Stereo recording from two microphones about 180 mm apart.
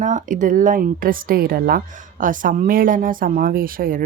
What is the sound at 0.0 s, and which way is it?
Speech, 45° right (ahead or behind).